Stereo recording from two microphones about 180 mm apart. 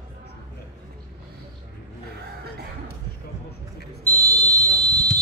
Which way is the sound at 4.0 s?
10° left (ahead or behind).